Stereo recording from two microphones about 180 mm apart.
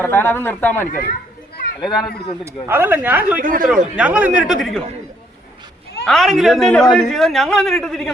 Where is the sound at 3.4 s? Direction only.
50° right (ahead or behind).